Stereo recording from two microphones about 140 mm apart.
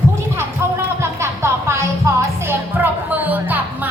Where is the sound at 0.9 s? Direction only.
20° right (ahead or behind).